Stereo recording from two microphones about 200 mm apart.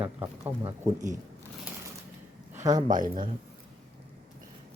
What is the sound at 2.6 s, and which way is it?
Speech, 15° right (ahead or behind).